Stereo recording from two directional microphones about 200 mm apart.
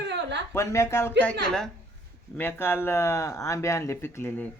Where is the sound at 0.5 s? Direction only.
15° left (ahead or behind).